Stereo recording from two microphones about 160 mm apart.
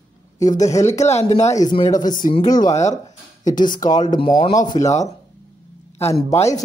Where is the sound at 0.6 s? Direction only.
20° left (ahead or behind).